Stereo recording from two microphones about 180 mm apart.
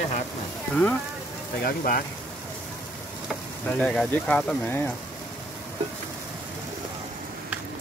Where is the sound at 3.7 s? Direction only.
5° left (ahead or behind).